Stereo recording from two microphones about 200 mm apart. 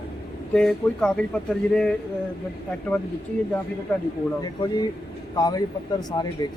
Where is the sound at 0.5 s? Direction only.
5° left (ahead or behind).